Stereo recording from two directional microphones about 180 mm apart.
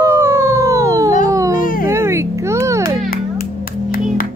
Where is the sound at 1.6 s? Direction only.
50° left (ahead or behind).